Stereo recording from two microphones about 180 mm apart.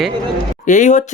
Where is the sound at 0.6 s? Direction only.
40° left (ahead or behind).